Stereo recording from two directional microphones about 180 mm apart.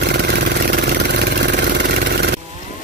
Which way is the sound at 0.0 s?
65° right (ahead or behind).